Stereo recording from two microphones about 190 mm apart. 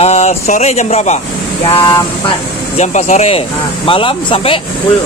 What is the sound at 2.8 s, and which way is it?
A man's voice, 40° left (ahead or behind).